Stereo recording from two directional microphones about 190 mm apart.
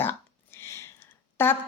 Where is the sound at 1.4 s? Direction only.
10° left (ahead or behind).